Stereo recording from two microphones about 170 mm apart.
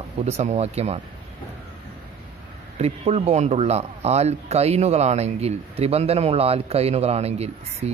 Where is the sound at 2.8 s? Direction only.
35° right (ahead or behind).